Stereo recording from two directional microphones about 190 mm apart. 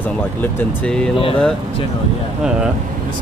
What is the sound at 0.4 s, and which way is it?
Speech, 5° left (ahead or behind).